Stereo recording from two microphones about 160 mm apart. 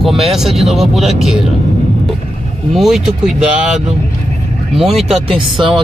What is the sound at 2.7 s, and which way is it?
Speech, centre (ahead or behind).